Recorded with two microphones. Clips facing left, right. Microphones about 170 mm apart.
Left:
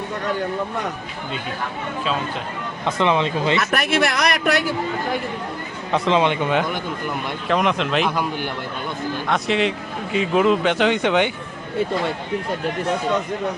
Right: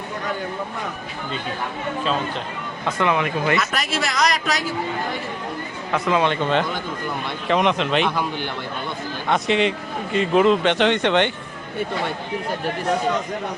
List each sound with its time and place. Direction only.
2.8 s speech: 20° left (ahead or behind)
3.6 s a man's voice: 55° left (ahead or behind)
5.9 s a man's voice: 20° left (ahead or behind); by 11.3 s 5° left (ahead or behind)